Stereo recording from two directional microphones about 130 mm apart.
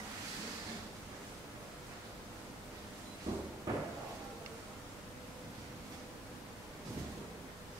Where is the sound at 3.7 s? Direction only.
25° right (ahead or behind).